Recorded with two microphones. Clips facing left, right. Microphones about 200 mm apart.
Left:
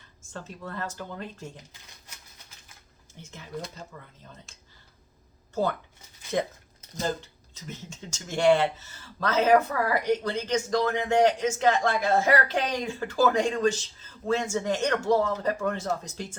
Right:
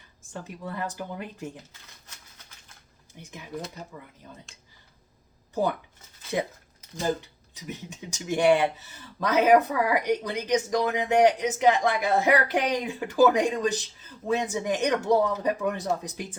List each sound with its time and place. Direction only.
0.3 s speech: 15° right (ahead or behind)
3.2 s speech: 15° right (ahead or behind)
7.0 s speech: 15° right (ahead or behind)